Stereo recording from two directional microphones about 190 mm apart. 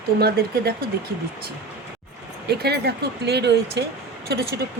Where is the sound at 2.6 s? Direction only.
60° right (ahead or behind).